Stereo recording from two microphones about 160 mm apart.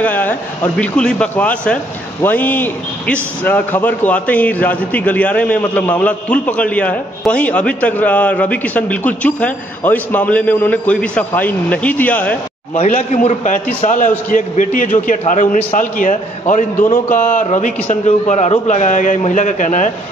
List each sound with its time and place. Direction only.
0.0 s a man's voice: 10° left (ahead or behind)
12.8 s a man's voice: 45° left (ahead or behind)